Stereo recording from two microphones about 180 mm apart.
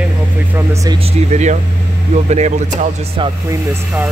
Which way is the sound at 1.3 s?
40° right (ahead or behind).